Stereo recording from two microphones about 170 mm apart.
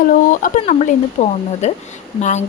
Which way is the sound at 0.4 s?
45° left (ahead or behind).